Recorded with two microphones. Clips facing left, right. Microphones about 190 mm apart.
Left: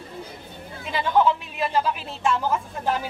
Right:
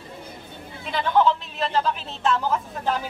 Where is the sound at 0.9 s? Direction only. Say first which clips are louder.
Even; 10° left (ahead or behind).